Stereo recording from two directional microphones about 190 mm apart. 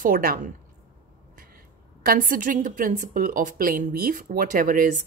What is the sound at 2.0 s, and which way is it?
A woman's voice, 50° right (ahead or behind).